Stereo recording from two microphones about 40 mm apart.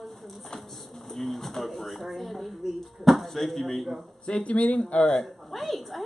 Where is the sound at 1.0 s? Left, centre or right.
Centre.